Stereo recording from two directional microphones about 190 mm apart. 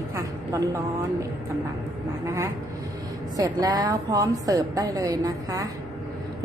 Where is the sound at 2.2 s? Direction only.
15° right (ahead or behind).